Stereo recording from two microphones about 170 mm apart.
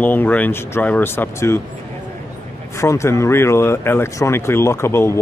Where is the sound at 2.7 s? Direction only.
15° left (ahead or behind).